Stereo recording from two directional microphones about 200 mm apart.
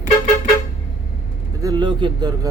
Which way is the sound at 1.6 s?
20° right (ahead or behind).